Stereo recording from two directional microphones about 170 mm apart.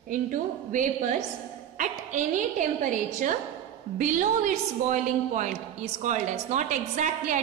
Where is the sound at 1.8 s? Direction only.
45° right (ahead or behind).